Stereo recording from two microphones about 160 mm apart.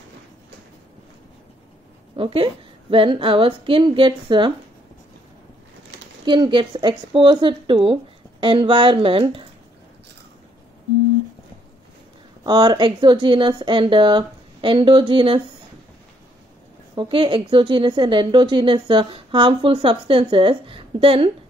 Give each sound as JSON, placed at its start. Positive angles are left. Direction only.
{"t": 2.1, "sound": "a woman's voice", "side_deg": -35}
{"t": 6.2, "sound": "a woman's voice", "side_deg": -30}
{"t": 12.4, "sound": "a woman's voice", "side_deg": -25}
{"t": 16.9, "sound": "a woman's voice", "side_deg": -30}